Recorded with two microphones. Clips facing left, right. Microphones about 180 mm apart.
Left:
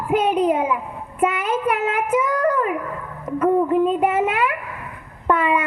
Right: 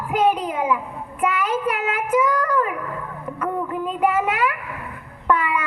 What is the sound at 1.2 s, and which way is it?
Child singing, 25° left (ahead or behind).